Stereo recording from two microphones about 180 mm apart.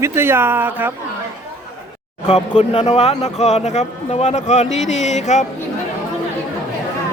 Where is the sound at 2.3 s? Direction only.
35° left (ahead or behind).